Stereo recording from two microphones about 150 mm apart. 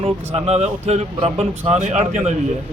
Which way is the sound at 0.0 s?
40° right (ahead or behind).